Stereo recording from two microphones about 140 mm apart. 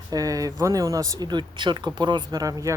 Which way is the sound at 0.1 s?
25° right (ahead or behind).